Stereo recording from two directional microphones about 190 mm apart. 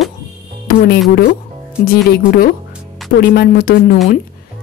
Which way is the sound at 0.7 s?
50° left (ahead or behind).